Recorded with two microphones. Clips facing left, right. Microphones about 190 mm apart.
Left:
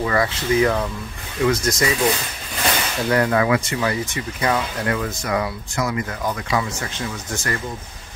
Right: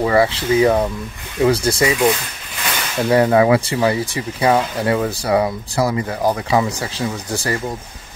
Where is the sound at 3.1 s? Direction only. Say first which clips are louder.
Right 5 dB; 25° right (ahead or behind).